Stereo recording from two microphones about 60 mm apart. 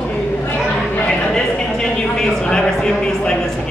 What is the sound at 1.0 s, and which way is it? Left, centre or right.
Speech, centre.